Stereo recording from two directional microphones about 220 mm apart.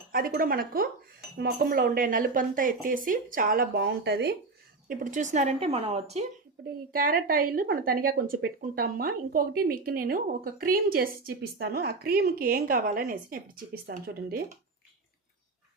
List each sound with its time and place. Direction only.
0.1 s speech: 40° right (ahead or behind)
6.9 s a woman's voice: 40° right (ahead or behind)